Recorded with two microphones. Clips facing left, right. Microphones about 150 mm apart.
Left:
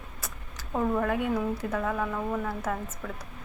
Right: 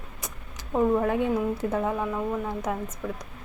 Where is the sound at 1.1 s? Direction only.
25° right (ahead or behind).